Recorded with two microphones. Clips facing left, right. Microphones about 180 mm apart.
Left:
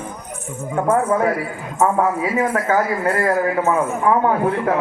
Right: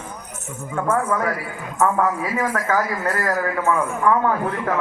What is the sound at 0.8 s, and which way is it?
A man's voice, 30° left (ahead or behind).